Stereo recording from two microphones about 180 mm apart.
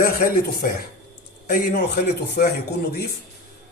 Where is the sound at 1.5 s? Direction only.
60° left (ahead or behind).